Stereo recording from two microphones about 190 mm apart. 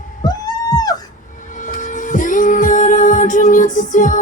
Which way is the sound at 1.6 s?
40° left (ahead or behind).